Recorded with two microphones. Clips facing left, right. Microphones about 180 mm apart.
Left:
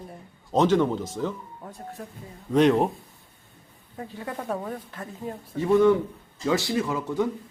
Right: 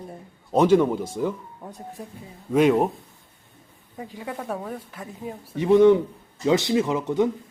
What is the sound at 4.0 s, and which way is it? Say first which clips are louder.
A woman's voice: right 1 dB; 10° right (ahead or behind).